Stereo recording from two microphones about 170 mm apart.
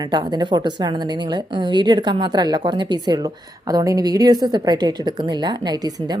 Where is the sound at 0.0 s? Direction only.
25° right (ahead or behind).